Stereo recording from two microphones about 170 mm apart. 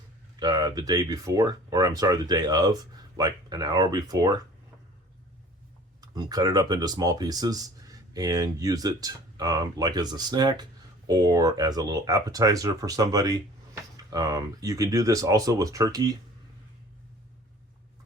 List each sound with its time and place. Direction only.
0.3 s speech: 25° right (ahead or behind)
6.0 s speech: 25° right (ahead or behind)